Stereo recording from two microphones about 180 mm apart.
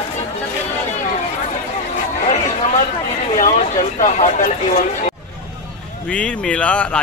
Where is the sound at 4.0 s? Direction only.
45° left (ahead or behind).